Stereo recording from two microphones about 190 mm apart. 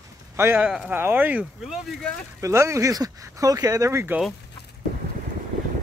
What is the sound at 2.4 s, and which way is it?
Speech, 15° right (ahead or behind).